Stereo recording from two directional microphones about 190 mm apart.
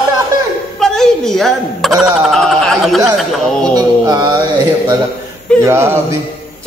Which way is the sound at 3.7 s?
20° right (ahead or behind).